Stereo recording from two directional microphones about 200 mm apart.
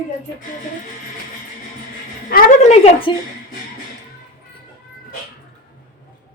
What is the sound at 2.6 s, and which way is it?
Speech, 35° left (ahead or behind).